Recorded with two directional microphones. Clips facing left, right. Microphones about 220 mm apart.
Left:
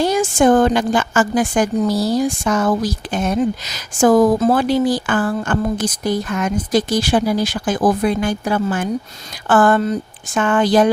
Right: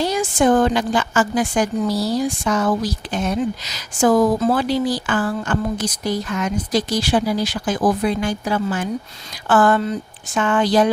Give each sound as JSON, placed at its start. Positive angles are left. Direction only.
{"t": 0.0, "sound": "a woman's voice", "side_deg": 50}